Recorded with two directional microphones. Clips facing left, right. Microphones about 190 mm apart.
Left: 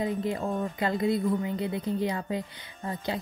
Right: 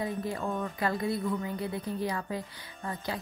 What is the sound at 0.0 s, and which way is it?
A woman's voice, 20° left (ahead or behind).